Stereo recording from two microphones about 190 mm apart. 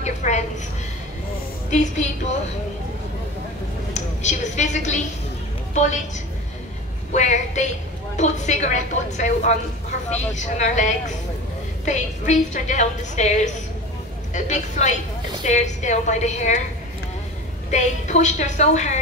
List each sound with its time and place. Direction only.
0.0 s a sound: 35° left (ahead or behind)
1.7 s a woman's voice: 40° left (ahead or behind)
3.9 s a woman's voice: 40° left (ahead or behind)
7.1 s a woman's voice: 40° left (ahead or behind)
17.6 s a woman's voice: 40° left (ahead or behind)